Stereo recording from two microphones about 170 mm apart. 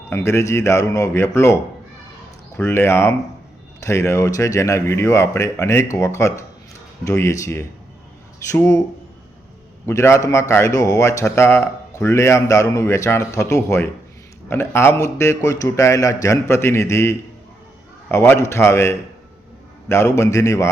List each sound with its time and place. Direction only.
0.1 s a man's voice: 15° left (ahead or behind)
2.6 s a man's voice: 15° left (ahead or behind)
9.8 s a man's voice: 15° left (ahead or behind)